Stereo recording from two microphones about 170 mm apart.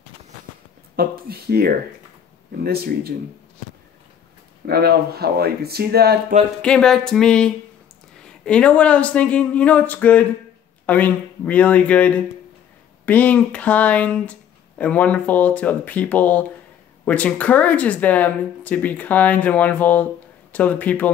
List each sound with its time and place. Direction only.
0.9 s speech: 65° right (ahead or behind)
4.6 s speech: 70° right (ahead or behind)
6.6 s speech: 5° left (ahead or behind)